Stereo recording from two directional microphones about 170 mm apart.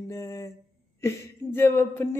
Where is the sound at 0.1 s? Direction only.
15° left (ahead or behind).